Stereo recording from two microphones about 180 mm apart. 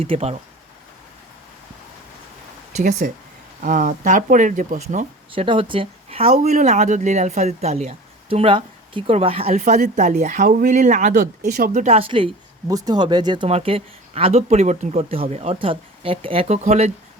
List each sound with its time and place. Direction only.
0.0 s speech: 35° right (ahead or behind)
3.0 s speech: 50° right (ahead or behind)
5.3 s speech: 30° right (ahead or behind)
11.1 s speech: 55° right (ahead or behind); by 12.3 s 30° right (ahead or behind)
12.6 s speech: 20° right (ahead or behind); by 16.9 s 40° right (ahead or behind)